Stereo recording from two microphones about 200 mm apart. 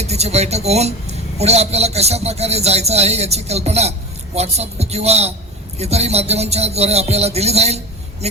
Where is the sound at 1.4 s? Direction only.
30° right (ahead or behind).